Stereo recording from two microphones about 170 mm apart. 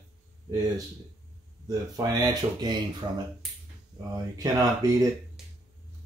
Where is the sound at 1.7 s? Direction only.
20° right (ahead or behind).